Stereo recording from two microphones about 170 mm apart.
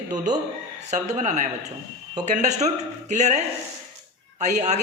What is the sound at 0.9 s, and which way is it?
A man's voice, 45° right (ahead or behind).